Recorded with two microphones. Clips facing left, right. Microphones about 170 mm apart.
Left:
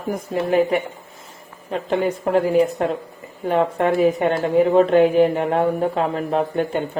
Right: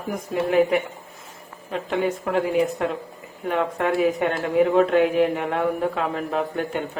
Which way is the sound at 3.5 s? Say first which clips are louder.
Left 4 dB; 30° left (ahead or behind).